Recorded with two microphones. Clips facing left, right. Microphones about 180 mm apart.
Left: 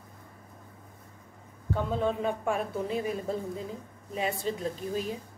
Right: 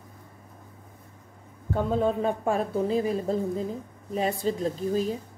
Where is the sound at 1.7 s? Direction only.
40° right (ahead or behind).